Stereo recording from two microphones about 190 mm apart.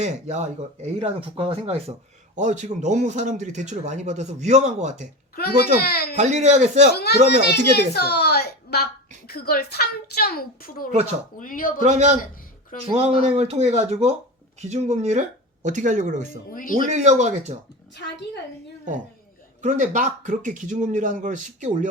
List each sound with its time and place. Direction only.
0.0 s speech: 35° right (ahead or behind)
5.3 s a child's voice: 55° left (ahead or behind)
6.1 s speech: 35° right (ahead or behind)
6.9 s a child's voice: 55° left (ahead or behind)
11.9 s speech: 35° right (ahead or behind)
16.5 s speech: 45° left (ahead or behind)
16.9 s speech: 40° right (ahead or behind)
17.9 s a child's voice: 65° left (ahead or behind)
19.6 s speech: 40° right (ahead or behind)